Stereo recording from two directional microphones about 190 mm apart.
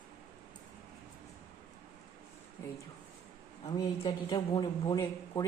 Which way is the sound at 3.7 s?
25° left (ahead or behind).